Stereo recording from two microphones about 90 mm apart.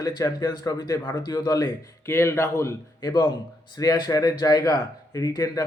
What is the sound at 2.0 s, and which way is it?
A man's voice, 30° left (ahead or behind).